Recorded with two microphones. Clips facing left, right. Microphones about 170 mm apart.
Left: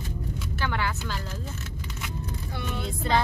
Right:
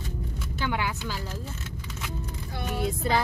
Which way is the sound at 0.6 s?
15° right (ahead or behind).